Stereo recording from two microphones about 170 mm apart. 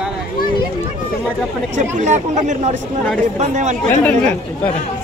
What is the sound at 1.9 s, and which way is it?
Speech, 45° right (ahead or behind).